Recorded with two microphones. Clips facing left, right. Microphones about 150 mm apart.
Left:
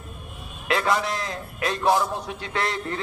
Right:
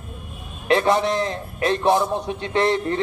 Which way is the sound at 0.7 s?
25° right (ahead or behind).